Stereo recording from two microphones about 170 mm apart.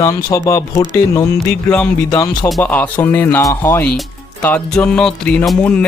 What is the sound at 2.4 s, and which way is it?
Speech, 10° left (ahead or behind).